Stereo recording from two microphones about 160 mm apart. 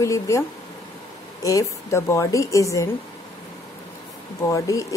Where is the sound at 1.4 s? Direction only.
20° left (ahead or behind).